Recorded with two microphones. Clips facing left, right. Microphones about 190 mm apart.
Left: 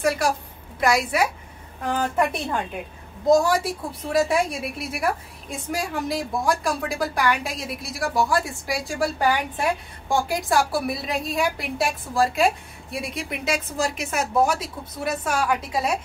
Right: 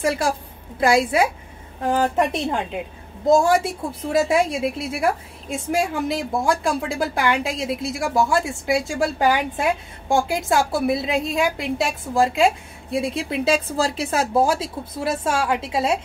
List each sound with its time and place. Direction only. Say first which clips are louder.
0.0 s a woman's voice: right 1 dB; 25° right (ahead or behind)